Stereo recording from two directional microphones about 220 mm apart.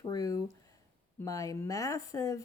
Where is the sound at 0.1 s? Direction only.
15° left (ahead or behind).